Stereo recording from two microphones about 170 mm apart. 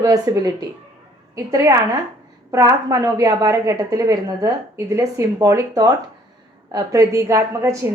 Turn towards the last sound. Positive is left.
turn(degrees=-20)  # may be behind; listen again after turning